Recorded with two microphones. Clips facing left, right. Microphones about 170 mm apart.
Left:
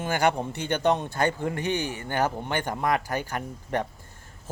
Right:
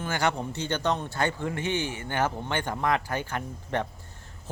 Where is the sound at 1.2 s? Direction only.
45° left (ahead or behind).